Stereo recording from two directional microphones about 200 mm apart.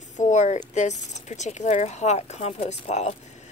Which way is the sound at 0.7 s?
35° left (ahead or behind).